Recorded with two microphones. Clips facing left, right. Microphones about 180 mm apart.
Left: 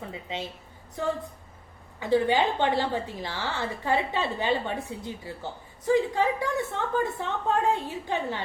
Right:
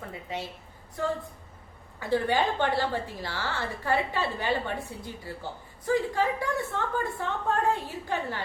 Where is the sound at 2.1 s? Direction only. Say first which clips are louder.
Left 3 dB; 15° left (ahead or behind).